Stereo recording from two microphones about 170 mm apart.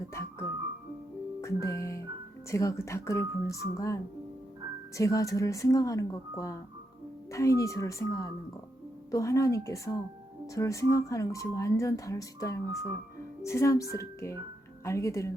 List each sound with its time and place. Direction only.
0.1 s music: 15° left (ahead or behind)
2.5 s speech: 15° left (ahead or behind)
4.9 s speech: 20° left (ahead or behind)